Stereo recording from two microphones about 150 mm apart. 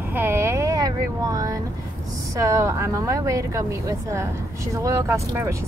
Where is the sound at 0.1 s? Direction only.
15° right (ahead or behind).